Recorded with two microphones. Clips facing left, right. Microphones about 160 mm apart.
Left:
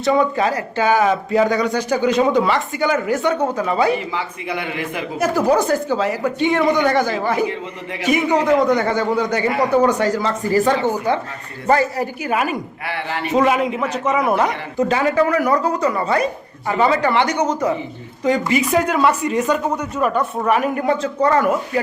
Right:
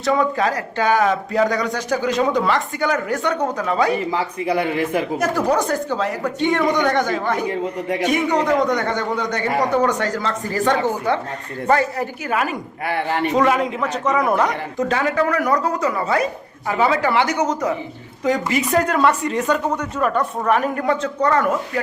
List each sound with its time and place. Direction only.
0.0 s speech: centre (ahead or behind)
3.9 s speech: 35° right (ahead or behind)
5.1 s speech: 5° left (ahead or behind)
7.5 s a man's voice: 45° right (ahead or behind)
8.0 s speech: 5° left (ahead or behind)
12.8 s a man's voice: 45° right (ahead or behind)
13.3 s speech: 10° left (ahead or behind)